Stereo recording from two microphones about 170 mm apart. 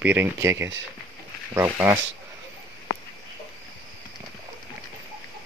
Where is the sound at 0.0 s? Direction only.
10° right (ahead or behind).